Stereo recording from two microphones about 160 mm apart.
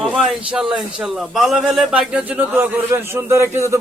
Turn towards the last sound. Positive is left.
turn(degrees=-15)  # may be behind; listen again after turning